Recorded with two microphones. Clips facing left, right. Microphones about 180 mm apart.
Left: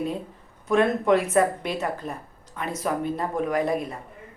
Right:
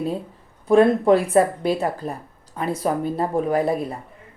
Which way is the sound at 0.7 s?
35° right (ahead or behind).